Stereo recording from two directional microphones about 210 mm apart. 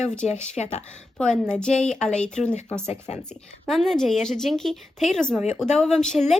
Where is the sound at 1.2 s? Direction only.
5° left (ahead or behind).